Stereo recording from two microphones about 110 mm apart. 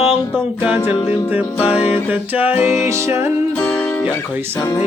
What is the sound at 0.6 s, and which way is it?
Music, 15° right (ahead or behind).